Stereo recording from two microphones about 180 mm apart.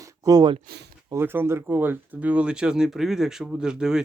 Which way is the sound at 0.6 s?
65° right (ahead or behind).